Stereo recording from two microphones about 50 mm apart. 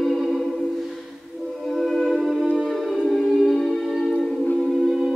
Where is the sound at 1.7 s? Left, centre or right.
Centre.